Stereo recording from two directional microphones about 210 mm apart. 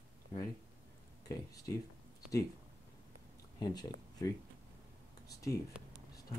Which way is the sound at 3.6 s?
20° left (ahead or behind).